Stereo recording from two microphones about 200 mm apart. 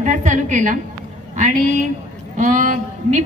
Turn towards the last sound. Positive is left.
turn(degrees=-40)  # may be behind; listen again after turning